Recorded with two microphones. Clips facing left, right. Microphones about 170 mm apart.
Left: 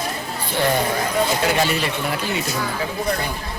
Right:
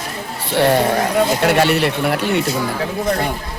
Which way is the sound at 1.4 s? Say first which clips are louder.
Right 6 dB; 65° right (ahead or behind).